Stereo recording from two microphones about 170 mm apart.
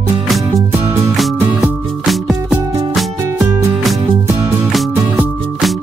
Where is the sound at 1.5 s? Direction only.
Centre (ahead or behind).